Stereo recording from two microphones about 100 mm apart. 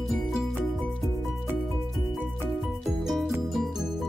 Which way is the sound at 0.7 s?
5° left (ahead or behind).